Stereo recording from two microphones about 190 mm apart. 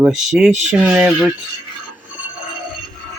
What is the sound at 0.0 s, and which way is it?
Speech, centre (ahead or behind).